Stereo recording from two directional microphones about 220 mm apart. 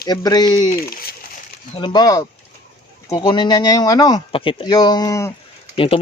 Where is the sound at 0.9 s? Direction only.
40° left (ahead or behind).